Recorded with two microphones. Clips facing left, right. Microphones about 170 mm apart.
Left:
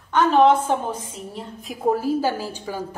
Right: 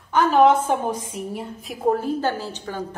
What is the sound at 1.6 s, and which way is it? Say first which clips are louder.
A woman's voice: even; centre (ahead or behind).